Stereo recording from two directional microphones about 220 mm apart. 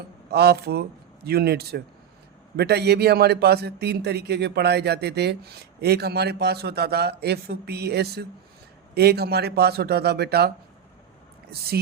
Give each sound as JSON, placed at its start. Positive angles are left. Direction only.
{"t": 0.3, "sound": "a man's voice", "side_deg": -45}